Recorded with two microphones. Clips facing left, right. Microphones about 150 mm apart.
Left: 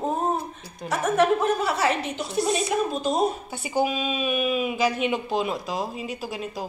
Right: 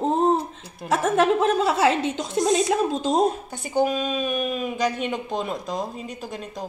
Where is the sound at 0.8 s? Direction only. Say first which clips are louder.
Right 1 dB; 90° right.